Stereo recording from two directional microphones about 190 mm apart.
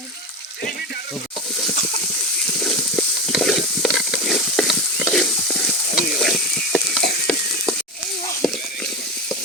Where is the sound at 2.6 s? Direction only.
Centre (ahead or behind).